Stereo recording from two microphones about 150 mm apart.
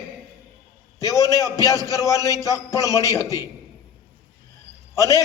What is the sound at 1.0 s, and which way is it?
A man's voice, 25° right (ahead or behind).